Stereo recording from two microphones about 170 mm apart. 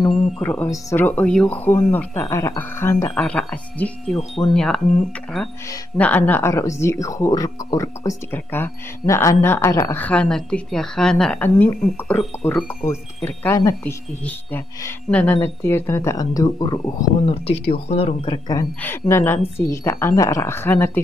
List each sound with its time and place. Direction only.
0.1 s speech: 10° left (ahead or behind)
5.9 s speech: 10° left (ahead or behind)
15.0 s speech: 10° left (ahead or behind)
17.8 s speech: 35° left (ahead or behind)
18.8 s speech: 15° left (ahead or behind)